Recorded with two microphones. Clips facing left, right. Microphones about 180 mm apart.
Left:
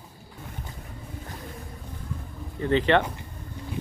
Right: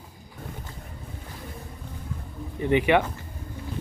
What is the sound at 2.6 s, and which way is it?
Speech, 15° right (ahead or behind).